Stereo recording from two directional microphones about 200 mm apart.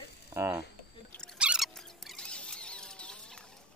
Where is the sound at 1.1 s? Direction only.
Centre (ahead or behind).